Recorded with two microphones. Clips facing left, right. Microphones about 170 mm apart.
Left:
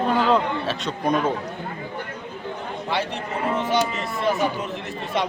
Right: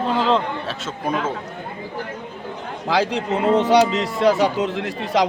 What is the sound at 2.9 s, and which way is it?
A man's voice, 90° right.